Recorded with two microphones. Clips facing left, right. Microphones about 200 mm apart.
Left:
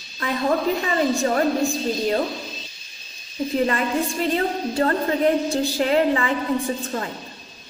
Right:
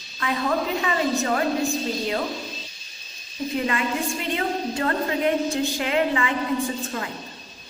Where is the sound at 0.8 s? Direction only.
40° left (ahead or behind).